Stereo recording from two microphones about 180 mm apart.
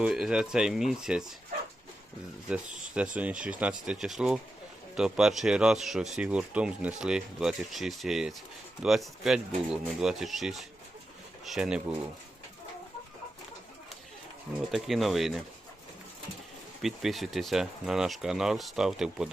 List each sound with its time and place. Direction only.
0.0 s speech: 5° right (ahead or behind)
3.2 s speech: 5° right (ahead or behind)
14.7 s speech: centre (ahead or behind)
16.8 s speech: centre (ahead or behind)